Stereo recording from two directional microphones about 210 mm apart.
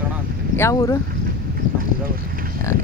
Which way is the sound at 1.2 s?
45° right (ahead or behind).